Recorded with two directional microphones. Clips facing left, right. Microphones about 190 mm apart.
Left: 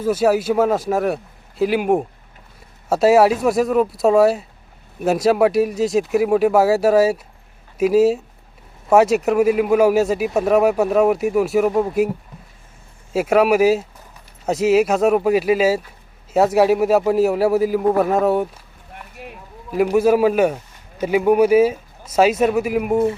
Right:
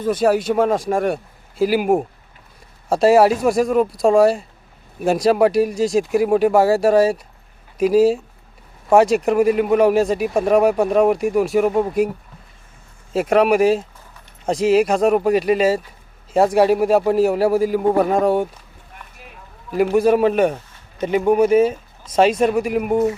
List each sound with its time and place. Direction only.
0.0 s speech: 5° left (ahead or behind)
13.1 s speech: 5° left (ahead or behind)
19.7 s speech: centre (ahead or behind)